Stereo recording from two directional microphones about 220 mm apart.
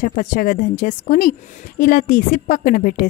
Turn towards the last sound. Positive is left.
turn(degrees=40)  # may be behind; listen again after turning